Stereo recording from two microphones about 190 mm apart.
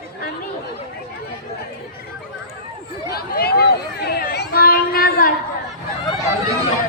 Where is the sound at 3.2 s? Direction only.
55° left (ahead or behind).